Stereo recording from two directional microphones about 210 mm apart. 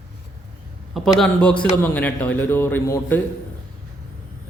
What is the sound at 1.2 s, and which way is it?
A man's voice, 5° left (ahead or behind).